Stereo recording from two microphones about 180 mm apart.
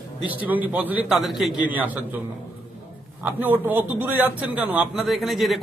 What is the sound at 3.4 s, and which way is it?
A man's voice, 10° right (ahead or behind).